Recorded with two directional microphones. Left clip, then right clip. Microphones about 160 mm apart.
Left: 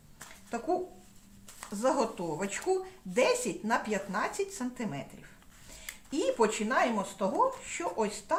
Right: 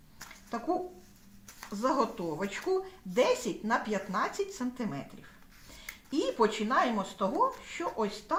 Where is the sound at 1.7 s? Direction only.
15° left (ahead or behind).